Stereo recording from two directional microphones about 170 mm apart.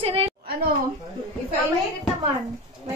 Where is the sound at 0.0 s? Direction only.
35° right (ahead or behind).